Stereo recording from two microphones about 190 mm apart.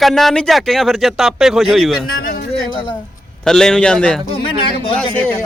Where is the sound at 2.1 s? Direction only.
55° left (ahead or behind).